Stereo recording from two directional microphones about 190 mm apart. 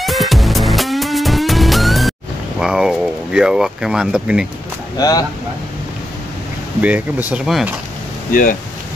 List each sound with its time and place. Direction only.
0.0 s music: centre (ahead or behind)
2.6 s speech: 5° right (ahead or behind)
4.9 s speech: 20° left (ahead or behind)
6.8 s speech: 10° right (ahead or behind)
8.3 s speech: 45° left (ahead or behind)